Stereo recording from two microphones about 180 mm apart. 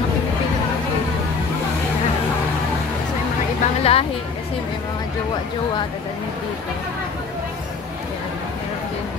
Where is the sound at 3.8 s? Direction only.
35° left (ahead or behind).